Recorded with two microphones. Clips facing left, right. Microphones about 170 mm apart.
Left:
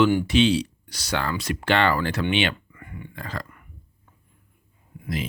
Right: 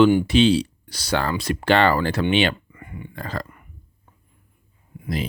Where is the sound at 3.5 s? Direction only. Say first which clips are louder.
Right 2 dB; 20° right (ahead or behind).